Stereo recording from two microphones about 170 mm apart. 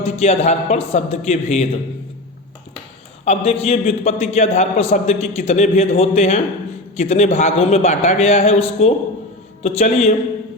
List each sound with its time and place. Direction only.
0.0 s a man's voice: 40° left (ahead or behind)
3.2 s a man's voice: 40° left (ahead or behind)